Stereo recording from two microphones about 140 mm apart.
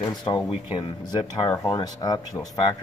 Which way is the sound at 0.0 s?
30° left (ahead or behind).